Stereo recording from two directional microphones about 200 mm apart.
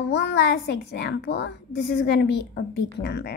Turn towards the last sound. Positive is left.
turn(degrees=55)  # may be behind; listen again after turning